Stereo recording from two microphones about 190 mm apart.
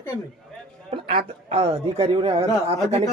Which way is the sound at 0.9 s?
30° right (ahead or behind).